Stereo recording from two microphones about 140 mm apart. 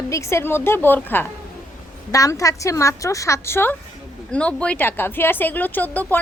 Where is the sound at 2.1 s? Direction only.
25° left (ahead or behind).